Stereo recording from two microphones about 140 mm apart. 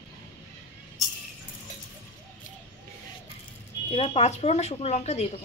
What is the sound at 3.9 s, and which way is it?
A woman's voice, 45° left (ahead or behind).